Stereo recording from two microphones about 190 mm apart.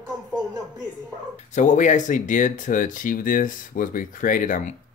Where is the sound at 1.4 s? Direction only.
40° left (ahead or behind).